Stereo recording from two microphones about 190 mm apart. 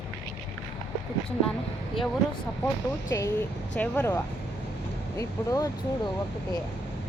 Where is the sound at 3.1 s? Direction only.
15° left (ahead or behind).